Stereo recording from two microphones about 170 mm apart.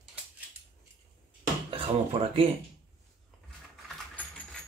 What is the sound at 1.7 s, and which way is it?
Speech, 35° right (ahead or behind).